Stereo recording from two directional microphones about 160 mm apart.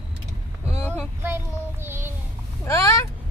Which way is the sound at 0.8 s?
15° left (ahead or behind).